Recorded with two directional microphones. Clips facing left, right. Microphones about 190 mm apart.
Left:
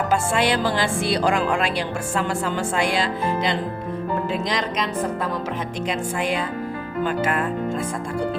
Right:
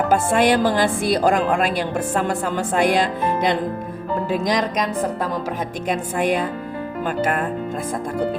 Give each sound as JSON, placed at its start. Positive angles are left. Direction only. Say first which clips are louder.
{"t": 0.1, "sound": "speech", "louder": "right 5 dB", "side_deg": -50}
{"t": 2.7, "sound": "speech", "louder": "right 7 dB", "side_deg": -50}
{"t": 5.9, "sound": "speech", "louder": "right 5 dB", "side_deg": -50}